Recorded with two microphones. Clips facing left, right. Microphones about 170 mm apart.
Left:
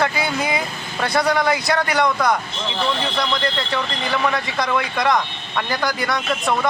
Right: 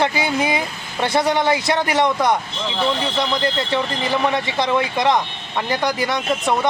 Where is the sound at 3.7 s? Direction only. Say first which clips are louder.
Right 3 dB; 25° right (ahead or behind).